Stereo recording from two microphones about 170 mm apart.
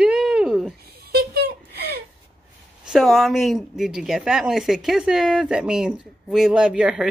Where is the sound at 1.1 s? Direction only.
70° right (ahead or behind).